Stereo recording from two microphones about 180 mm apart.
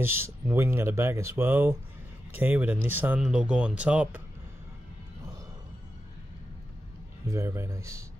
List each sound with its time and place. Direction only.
0.0 s speech: 10° right (ahead or behind)
7.2 s speech: 15° right (ahead or behind)